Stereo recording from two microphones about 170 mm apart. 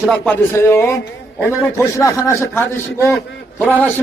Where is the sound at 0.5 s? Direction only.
15° left (ahead or behind).